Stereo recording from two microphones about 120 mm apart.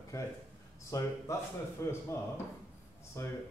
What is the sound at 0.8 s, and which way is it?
Speech, 25° left (ahead or behind).